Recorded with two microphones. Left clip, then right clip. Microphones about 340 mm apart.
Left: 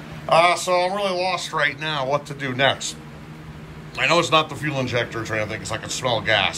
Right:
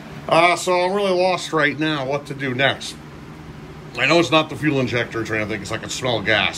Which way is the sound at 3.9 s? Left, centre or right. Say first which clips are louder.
Right 2 dB; centre.